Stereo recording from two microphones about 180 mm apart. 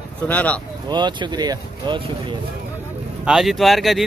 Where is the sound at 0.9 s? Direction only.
25° right (ahead or behind).